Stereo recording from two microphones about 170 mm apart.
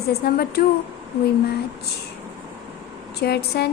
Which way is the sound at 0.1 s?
65° left (ahead or behind).